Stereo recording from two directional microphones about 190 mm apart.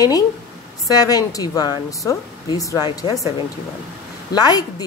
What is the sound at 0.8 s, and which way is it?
A woman's voice, 20° left (ahead or behind).